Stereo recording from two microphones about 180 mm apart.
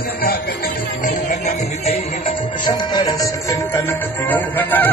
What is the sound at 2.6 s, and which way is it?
Music, 20° left (ahead or behind).